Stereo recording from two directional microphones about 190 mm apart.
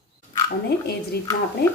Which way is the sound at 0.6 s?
55° left (ahead or behind).